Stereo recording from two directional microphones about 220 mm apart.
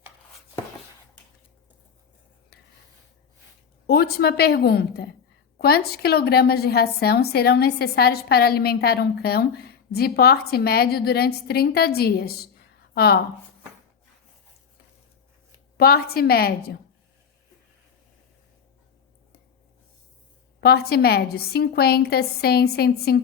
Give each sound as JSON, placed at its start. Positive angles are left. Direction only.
{"t": 3.8, "sound": "a woman's voice", "side_deg": 45}
{"t": 15.8, "sound": "a woman's voice", "side_deg": 45}
{"t": 20.6, "sound": "a woman's voice", "side_deg": 45}